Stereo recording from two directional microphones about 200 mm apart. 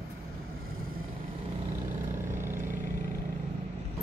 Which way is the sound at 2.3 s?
10° right (ahead or behind).